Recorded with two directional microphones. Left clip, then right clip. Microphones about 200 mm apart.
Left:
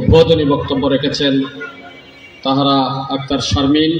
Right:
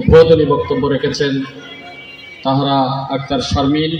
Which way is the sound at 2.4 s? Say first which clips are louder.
Left 1 dB; 55° right (ahead or behind).